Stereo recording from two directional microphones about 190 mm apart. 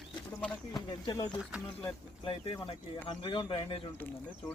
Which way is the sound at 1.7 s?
25° left (ahead or behind).